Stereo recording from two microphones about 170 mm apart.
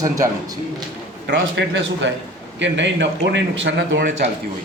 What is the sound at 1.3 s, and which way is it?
A man's voice, 90° right.